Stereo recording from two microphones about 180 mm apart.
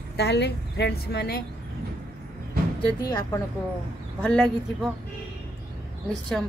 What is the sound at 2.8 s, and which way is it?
Speech, 20° left (ahead or behind).